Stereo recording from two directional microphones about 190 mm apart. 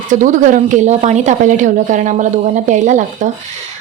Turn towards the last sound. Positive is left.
turn(degrees=-40)  # may be behind; listen again after turning